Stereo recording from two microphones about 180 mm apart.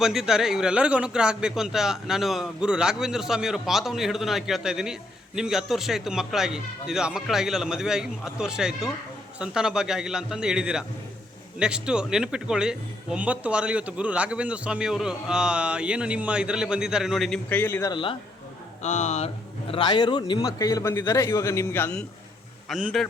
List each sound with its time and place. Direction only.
0.0 s speech: centre (ahead or behind); by 17.9 s 15° left (ahead or behind)
17.9 s a man's voice: 30° left (ahead or behind)
18.8 s speech: 40° left (ahead or behind)
19.7 s a man's voice: 25° left (ahead or behind)
22.7 s speech: centre (ahead or behind)